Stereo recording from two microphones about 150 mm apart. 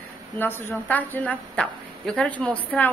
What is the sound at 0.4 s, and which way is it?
A woman's voice, 15° left (ahead or behind).